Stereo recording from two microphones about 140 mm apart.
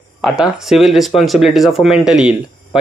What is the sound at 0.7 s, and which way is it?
Speech, centre (ahead or behind).